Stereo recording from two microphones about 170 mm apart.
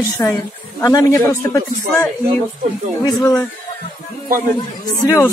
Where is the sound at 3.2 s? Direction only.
20° left (ahead or behind).